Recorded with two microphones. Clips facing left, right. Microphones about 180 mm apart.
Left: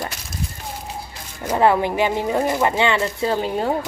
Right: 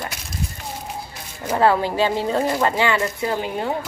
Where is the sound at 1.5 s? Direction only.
20° left (ahead or behind).